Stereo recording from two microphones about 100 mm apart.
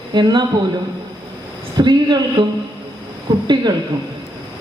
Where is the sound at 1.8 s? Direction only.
45° right (ahead or behind).